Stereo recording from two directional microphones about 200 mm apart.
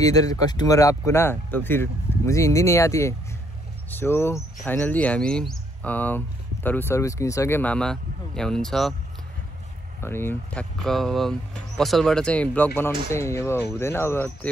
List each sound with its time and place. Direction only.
0.0 s speech: 20° left (ahead or behind); by 8.9 s centre (ahead or behind)
10.0 s speech: 10° left (ahead or behind)